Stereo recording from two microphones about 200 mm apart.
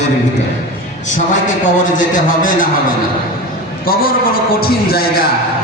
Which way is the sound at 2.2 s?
40° left (ahead or behind).